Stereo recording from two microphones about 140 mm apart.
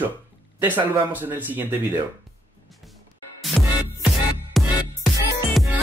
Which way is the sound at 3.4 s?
Centre (ahead or behind).